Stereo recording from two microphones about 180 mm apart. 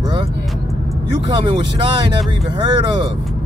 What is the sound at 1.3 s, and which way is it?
Speech, 25° right (ahead or behind).